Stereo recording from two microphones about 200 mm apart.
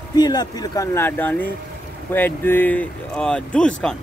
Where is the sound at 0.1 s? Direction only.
20° left (ahead or behind).